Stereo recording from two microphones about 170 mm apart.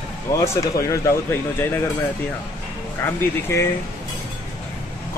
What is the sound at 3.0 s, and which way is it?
Speech, 15° left (ahead or behind).